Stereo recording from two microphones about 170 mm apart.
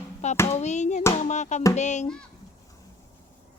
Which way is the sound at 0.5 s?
40° left (ahead or behind).